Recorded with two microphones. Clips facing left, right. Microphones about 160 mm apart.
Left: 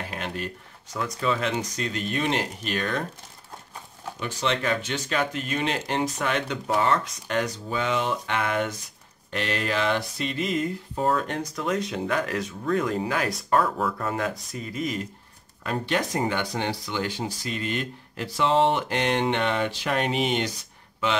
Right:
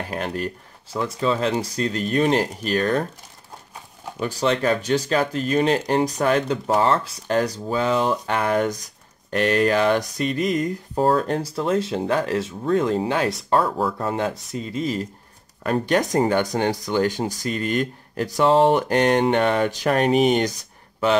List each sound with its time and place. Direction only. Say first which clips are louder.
0.1 s speech: right 8 dB; 40° right (ahead or behind)
0.9 s speech: right 4 dB; 30° right (ahead or behind)
4.4 s speech: right 5 dB; 40° right (ahead or behind)
15.6 s speech: right 6 dB; 45° right (ahead or behind)